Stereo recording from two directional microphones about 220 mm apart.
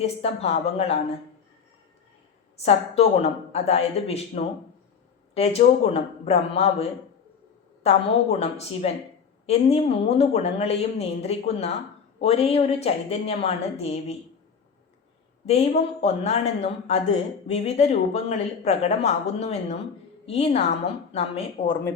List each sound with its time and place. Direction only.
0.0 s speech: 25° left (ahead or behind)
2.6 s speech: 30° left (ahead or behind)
7.9 s speech: 30° left (ahead or behind)
15.4 s speech: 30° left (ahead or behind)